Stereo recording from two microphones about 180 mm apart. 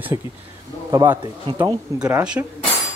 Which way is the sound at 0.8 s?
20° right (ahead or behind).